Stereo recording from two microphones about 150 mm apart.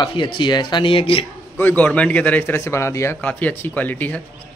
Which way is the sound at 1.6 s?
10° left (ahead or behind).